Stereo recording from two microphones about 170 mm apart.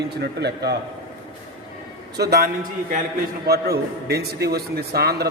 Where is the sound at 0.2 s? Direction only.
80° right.